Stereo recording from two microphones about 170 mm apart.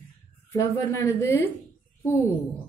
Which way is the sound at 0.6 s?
15° left (ahead or behind).